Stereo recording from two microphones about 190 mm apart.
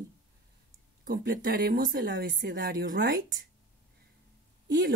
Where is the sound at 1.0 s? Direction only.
50° right (ahead or behind).